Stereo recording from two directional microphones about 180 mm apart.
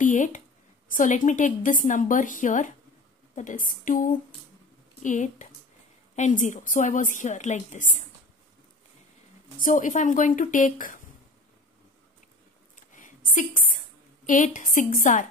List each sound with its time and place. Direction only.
0.0 s a woman's voice: 45° left (ahead or behind)
9.6 s a woman's voice: 45° left (ahead or behind)
12.9 s a sound: 45° left (ahead or behind)